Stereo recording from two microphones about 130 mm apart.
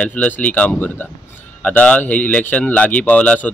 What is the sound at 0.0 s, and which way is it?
Speech, 10° left (ahead or behind).